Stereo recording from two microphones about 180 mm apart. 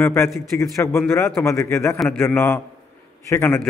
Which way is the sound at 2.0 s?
5° left (ahead or behind).